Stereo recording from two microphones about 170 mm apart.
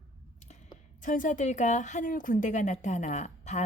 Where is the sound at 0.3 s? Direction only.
40° left (ahead or behind).